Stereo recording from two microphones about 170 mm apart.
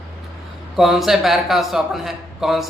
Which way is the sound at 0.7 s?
Centre (ahead or behind).